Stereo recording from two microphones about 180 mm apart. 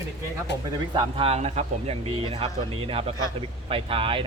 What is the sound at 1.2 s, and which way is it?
Speech, 35° right (ahead or behind).